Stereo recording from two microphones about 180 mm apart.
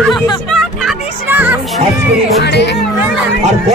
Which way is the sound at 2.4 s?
70° left (ahead or behind).